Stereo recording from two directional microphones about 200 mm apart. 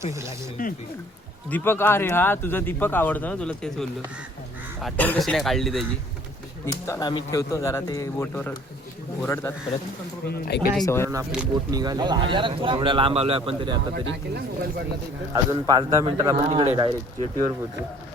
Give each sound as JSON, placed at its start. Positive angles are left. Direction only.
{"t": 0.0, "sound": "a man's voice", "side_deg": -15}
{"t": 0.6, "sound": "speech", "side_deg": 45}
{"t": 1.5, "sound": "speech", "side_deg": 10}
{"t": 6.8, "sound": "speech", "side_deg": 15}
{"t": 10.2, "sound": "speech", "side_deg": 50}
{"t": 10.8, "sound": "speech", "side_deg": 10}
{"t": 11.7, "sound": "speech", "side_deg": -20}
{"t": 13.9, "sound": "speech", "side_deg": -60}
{"t": 15.3, "sound": "a man's voice", "side_deg": -20}
{"t": 16.5, "sound": "speech", "side_deg": -30}